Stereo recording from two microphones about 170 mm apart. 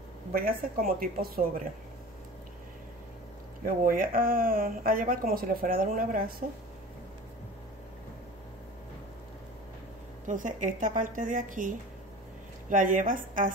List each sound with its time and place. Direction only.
0.3 s speech: 60° right (ahead or behind)
3.6 s speech: 55° right (ahead or behind)
10.2 s a woman's voice: 50° right (ahead or behind)